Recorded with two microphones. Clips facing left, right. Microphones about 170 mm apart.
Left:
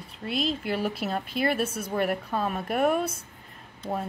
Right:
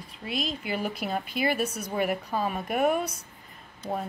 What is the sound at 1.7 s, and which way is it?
Speech, 25° left (ahead or behind).